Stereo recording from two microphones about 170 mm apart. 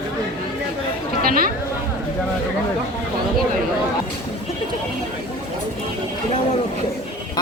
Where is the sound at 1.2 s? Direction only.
55° right (ahead or behind).